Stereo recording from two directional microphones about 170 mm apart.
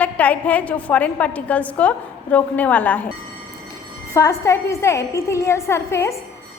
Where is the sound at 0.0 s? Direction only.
10° left (ahead or behind).